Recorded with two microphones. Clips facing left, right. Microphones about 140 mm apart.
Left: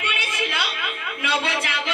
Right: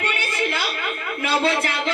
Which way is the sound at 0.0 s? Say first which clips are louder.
Right 3 dB; 40° right (ahead or behind).